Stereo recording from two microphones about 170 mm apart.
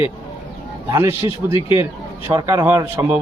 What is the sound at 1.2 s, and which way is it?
Speech, 30° left (ahead or behind).